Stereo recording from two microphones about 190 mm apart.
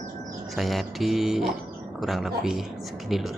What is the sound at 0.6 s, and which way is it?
Speech, centre (ahead or behind).